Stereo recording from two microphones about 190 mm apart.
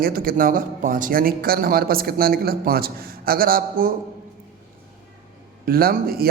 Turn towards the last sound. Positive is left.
turn(degrees=-50)  # may be behind; listen again after turning